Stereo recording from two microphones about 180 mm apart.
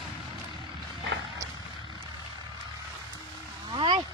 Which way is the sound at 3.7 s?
25° right (ahead or behind).